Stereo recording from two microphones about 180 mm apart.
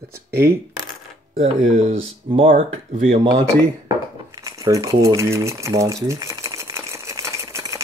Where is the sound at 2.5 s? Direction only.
45° right (ahead or behind).